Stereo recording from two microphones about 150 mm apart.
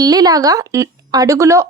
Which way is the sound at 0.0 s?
25° right (ahead or behind).